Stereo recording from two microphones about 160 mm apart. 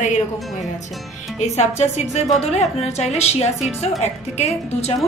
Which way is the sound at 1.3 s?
45° left (ahead or behind).